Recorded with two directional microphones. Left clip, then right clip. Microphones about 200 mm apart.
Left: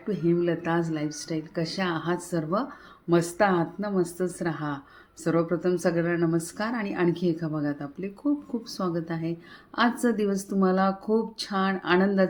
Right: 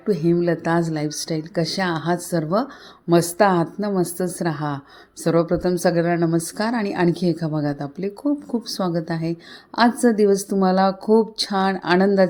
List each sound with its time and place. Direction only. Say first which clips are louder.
0.1 s a woman's voice: right 6 dB; 40° right (ahead or behind)